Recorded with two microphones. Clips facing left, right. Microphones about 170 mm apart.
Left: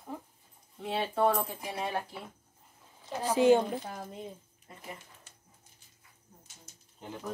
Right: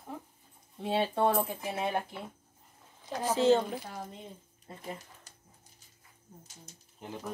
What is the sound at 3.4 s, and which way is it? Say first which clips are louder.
Speech: left 2 dB; 15° left (ahead or behind).